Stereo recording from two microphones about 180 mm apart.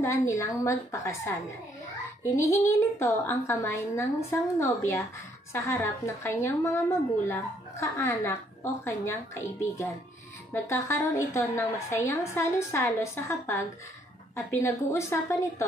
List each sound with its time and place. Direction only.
0.0 s a woman's voice: 15° left (ahead or behind)
2.3 s a woman's voice: 15° left (ahead or behind)